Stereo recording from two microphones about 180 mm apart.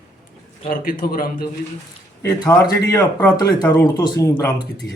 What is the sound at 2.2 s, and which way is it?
Speech, 15° left (ahead or behind).